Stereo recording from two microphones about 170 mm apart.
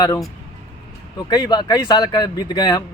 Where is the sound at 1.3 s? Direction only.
25° left (ahead or behind).